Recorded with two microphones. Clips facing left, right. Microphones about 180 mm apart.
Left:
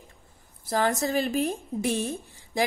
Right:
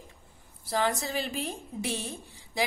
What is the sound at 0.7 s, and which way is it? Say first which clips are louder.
A woman's voice: left 4 dB; 45° left (ahead or behind).